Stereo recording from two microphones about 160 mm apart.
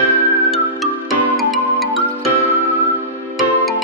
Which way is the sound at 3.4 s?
Centre (ahead or behind).